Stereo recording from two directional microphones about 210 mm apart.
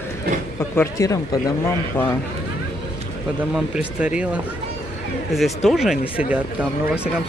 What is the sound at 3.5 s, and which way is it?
Speech, 5° right (ahead or behind).